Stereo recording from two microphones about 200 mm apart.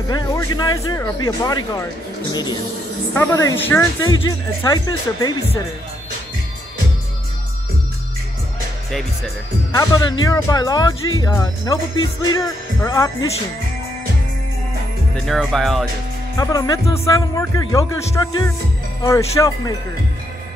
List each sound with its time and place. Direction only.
0.1 s speech: 20° left (ahead or behind)
3.2 s speech: 15° left (ahead or behind)
9.7 s speech: 20° left (ahead or behind)
15.2 s speech: centre (ahead or behind)
16.3 s speech: 20° left (ahead or behind)